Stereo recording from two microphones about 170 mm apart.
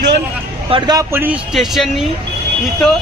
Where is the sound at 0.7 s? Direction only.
20° right (ahead or behind).